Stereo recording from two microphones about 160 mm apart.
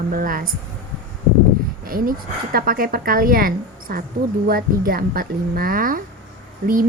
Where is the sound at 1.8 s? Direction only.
65° right (ahead or behind).